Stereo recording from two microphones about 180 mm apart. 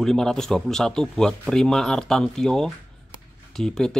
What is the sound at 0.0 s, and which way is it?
Speech, centre (ahead or behind).